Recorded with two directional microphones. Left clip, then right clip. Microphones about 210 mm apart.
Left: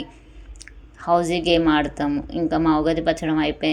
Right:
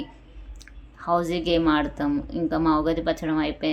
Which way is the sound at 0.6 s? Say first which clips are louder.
Left 3 dB; 5° left (ahead or behind).